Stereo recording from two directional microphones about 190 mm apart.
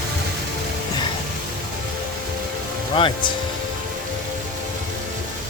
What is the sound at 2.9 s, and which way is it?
Speech, 25° left (ahead or behind).